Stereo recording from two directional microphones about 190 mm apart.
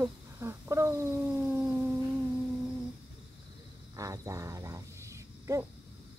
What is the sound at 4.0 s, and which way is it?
Cricket, 15° right (ahead or behind).